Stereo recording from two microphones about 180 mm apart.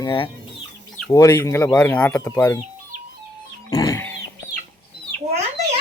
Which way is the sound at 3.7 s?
20° left (ahead or behind).